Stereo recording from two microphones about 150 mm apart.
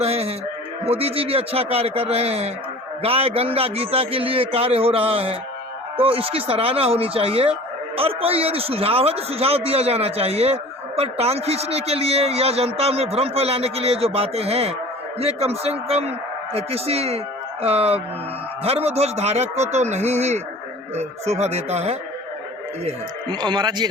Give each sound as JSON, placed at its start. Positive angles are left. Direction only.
{"t": 0.0, "sound": "a man's voice", "side_deg": -40}
{"t": 23.3, "sound": "speech", "side_deg": -30}